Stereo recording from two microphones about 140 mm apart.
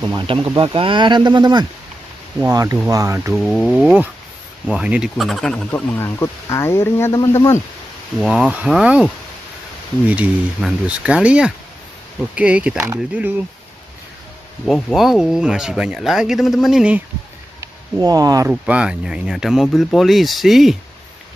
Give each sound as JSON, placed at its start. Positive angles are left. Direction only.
{"t": 0.0, "sound": "speech", "side_deg": -30}
{"t": 3.3, "sound": "speech", "side_deg": 0}
{"t": 5.7, "sound": "speech", "side_deg": 15}
{"t": 8.2, "sound": "speech", "side_deg": -5}
{"t": 10.0, "sound": "speech", "side_deg": -10}
{"t": 14.7, "sound": "speech", "side_deg": 0}
{"t": 17.6, "sound": "a sound", "side_deg": -25}
{"t": 18.5, "sound": "speech", "side_deg": -5}